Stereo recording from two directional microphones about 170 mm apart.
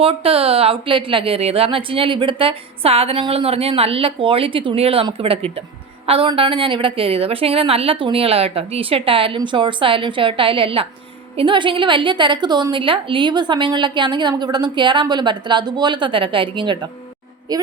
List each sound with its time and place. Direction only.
0.0 s a woman's voice: 35° right (ahead or behind)